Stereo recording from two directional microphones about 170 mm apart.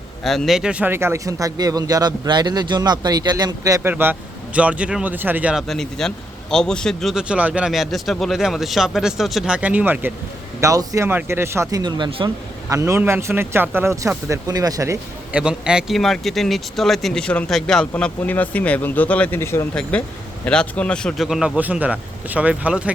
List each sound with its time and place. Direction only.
0.3 s speech: centre (ahead or behind); by 12.7 s 25° right (ahead or behind)
12.7 s speech: 15° right (ahead or behind)
15.3 s speech: 5° right (ahead or behind)